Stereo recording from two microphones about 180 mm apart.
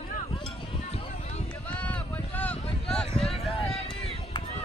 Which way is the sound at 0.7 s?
35° left (ahead or behind).